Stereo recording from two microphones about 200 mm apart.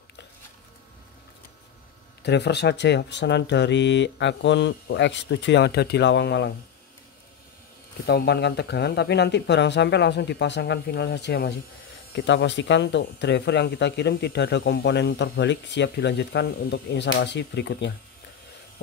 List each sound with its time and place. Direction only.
2.2 s speech: 55° left (ahead or behind)
8.1 s speech: 55° left (ahead or behind)